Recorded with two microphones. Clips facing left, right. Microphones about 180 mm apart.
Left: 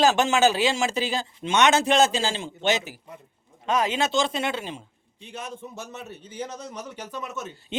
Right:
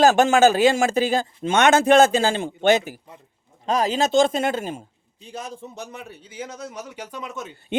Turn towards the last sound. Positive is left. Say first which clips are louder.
# right 1 dB
turn(degrees=-15)  # may be behind; listen again after turning